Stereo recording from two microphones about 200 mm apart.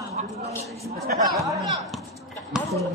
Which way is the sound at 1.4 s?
15° right (ahead or behind).